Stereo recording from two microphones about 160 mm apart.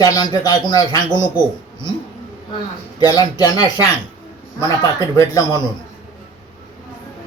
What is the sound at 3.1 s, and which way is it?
Speech, 25° left (ahead or behind).